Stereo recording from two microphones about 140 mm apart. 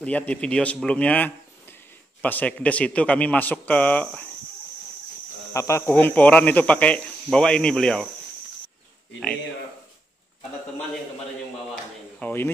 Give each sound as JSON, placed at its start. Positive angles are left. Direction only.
{"t": 0.0, "sound": "speech", "side_deg": 10}
{"t": 5.5, "sound": "speech", "side_deg": 20}
{"t": 12.2, "sound": "a sound", "side_deg": 15}